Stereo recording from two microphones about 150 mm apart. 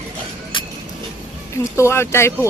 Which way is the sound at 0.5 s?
35° left (ahead or behind).